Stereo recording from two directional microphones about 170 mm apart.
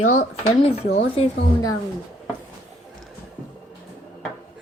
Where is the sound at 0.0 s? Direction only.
50° left (ahead or behind).